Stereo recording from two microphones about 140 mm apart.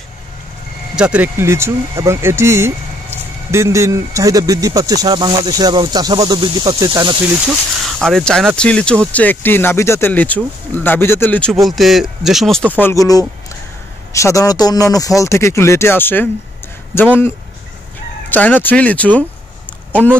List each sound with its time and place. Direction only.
0.9 s speech: 10° right (ahead or behind); by 7.2 s 35° right (ahead or behind)
7.4 s speech: centre (ahead or behind)
11.6 s speech: centre (ahead or behind)
12.7 s speech: 20° left (ahead or behind)
18.3 s speech: 10° left (ahead or behind)